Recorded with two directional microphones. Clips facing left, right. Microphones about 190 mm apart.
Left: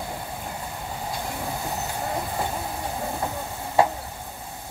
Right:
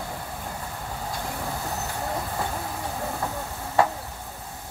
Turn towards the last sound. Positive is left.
turn(degrees=15)  # may be behind; listen again after turning